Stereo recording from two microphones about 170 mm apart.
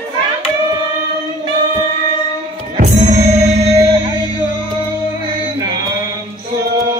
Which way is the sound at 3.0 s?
40° right (ahead or behind).